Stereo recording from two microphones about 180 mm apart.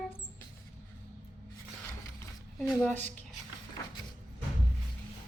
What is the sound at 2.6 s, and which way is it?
Speech, 5° left (ahead or behind).